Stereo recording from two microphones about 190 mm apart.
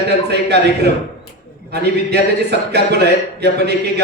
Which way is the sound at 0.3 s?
60° right (ahead or behind).